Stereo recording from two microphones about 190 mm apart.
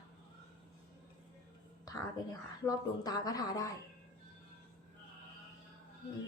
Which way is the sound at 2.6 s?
20° left (ahead or behind).